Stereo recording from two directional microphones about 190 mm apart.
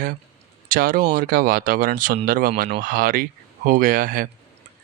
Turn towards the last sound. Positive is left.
turn(degrees=-45)  # may be behind; listen again after turning